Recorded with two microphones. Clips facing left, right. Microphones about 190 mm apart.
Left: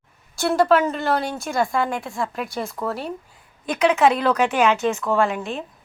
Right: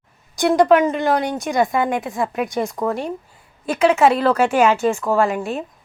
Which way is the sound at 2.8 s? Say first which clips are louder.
Right 4 dB; 20° right (ahead or behind).